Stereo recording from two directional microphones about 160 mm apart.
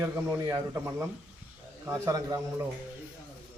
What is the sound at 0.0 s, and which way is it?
A man's voice, 15° right (ahead or behind).